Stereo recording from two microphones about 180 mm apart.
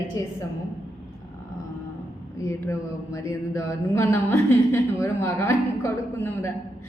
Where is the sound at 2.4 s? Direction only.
15° left (ahead or behind).